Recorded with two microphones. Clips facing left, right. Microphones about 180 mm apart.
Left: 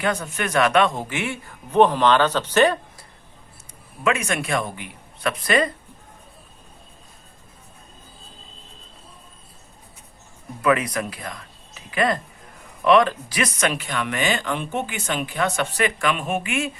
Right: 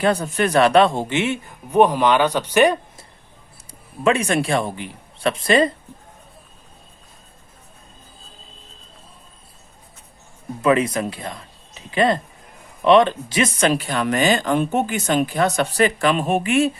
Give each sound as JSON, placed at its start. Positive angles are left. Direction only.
{"t": 0.0, "sound": "speech", "side_deg": -35}
{"t": 4.0, "sound": "speech", "side_deg": -30}
{"t": 10.6, "sound": "speech", "side_deg": -25}